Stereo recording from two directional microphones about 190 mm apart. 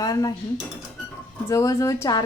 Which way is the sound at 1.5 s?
15° left (ahead or behind).